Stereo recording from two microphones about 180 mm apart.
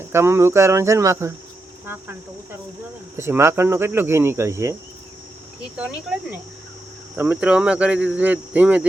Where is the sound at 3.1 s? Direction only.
15° right (ahead or behind).